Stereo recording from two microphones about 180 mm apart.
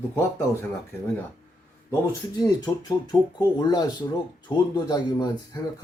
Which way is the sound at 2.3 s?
20° left (ahead or behind).